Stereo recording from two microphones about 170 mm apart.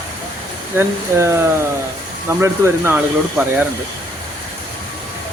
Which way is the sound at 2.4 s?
15° right (ahead or behind).